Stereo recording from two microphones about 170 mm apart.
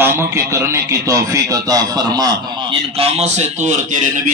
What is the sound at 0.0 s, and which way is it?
A man's voice, 15° right (ahead or behind).